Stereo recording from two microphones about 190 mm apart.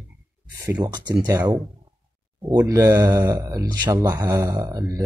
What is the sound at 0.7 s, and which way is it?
Speech, 20° right (ahead or behind).